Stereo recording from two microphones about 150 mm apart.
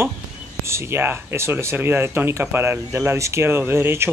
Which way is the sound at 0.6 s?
15° right (ahead or behind).